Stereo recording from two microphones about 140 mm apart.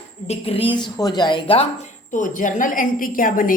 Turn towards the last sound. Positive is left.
turn(degrees=80)